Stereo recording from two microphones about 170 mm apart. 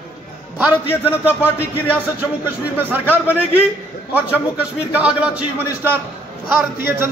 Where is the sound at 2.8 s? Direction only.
10° right (ahead or behind).